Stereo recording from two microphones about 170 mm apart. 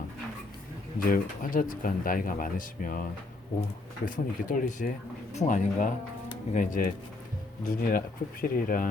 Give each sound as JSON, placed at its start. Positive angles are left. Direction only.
{"t": 1.0, "sound": "speech", "side_deg": 55}